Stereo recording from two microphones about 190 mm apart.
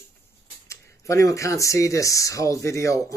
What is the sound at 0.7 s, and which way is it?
Speech, 15° left (ahead or behind).